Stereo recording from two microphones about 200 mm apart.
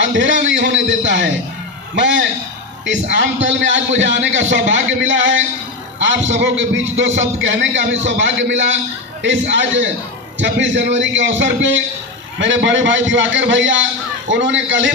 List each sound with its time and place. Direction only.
0.0 s a man's voice: 65° right (ahead or behind)